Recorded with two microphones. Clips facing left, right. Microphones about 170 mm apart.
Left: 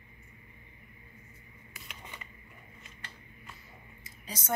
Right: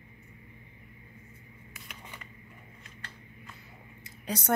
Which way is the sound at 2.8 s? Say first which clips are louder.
Right 3 dB; 5° left (ahead or behind).